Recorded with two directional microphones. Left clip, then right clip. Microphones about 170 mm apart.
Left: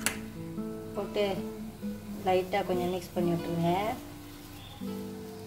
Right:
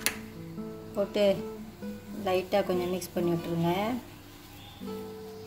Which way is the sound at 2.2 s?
75° right (ahead or behind).